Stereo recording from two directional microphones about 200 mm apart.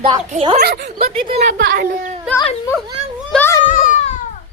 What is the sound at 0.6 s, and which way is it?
Speech, 55° right (ahead or behind).